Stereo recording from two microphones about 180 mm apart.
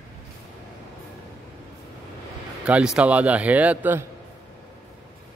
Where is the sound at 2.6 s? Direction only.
5° right (ahead or behind).